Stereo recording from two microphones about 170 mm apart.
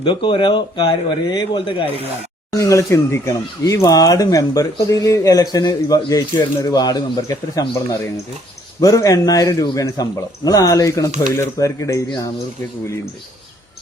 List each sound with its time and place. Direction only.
0.0 s speech: 30° left (ahead or behind)